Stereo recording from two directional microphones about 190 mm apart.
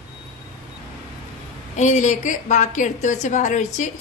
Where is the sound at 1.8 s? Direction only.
40° left (ahead or behind).